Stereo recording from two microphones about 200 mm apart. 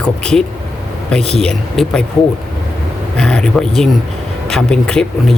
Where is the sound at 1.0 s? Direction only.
5° left (ahead or behind).